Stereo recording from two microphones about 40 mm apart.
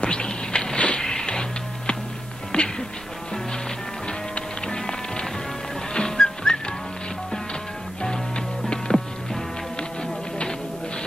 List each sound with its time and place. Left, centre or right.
0.0 s insect: left
0.7 s a sound: left
2.5 s music: left
4.4 s music: left
8.0 s music: centre